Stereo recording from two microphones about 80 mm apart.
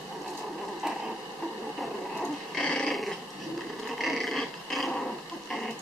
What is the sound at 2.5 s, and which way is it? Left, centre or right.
Dog, centre.